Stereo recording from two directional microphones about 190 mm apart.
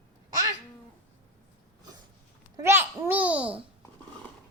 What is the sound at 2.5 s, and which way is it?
Babbling, 15° right (ahead or behind).